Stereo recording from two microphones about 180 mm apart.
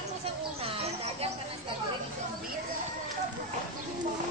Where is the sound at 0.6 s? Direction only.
35° right (ahead or behind).